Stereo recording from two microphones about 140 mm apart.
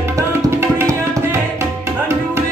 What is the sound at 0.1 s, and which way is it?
Tabla, 15° right (ahead or behind).